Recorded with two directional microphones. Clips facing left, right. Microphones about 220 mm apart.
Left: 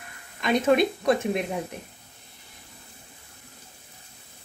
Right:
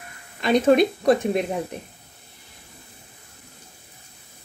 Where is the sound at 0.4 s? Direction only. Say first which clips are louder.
Right 4 dB; 35° right (ahead or behind).